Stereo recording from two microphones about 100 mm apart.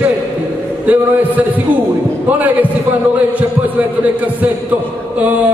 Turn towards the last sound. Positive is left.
turn(degrees=-15)  # may be behind; listen again after turning